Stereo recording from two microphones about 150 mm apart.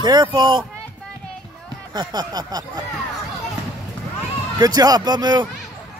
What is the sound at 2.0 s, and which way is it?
Speech, 25° right (ahead or behind).